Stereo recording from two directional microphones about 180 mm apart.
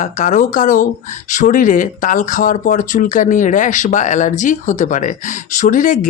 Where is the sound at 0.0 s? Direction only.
45° left (ahead or behind).